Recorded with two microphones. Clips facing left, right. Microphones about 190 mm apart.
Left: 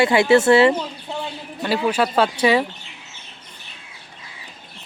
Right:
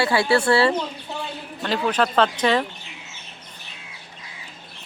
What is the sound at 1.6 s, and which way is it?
Speech, 10° left (ahead or behind).